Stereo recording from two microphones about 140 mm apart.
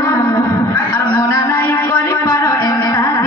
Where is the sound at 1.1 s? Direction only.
25° left (ahead or behind).